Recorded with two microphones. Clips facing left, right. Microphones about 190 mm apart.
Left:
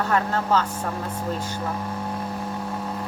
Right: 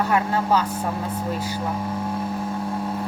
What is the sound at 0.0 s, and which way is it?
Speech, 10° right (ahead or behind).